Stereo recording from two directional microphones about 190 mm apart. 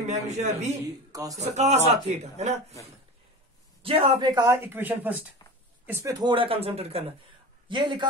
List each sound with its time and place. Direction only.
0.0 s speech: 35° right (ahead or behind)
1.1 s speech: 20° right (ahead or behind)
1.4 s speech: 35° right (ahead or behind)
3.8 s a man's voice: 30° right (ahead or behind)